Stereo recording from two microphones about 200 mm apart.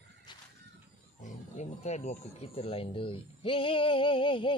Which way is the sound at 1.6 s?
35° left (ahead or behind).